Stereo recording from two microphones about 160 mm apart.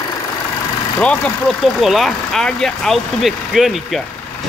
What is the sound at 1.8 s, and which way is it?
Speech, centre (ahead or behind).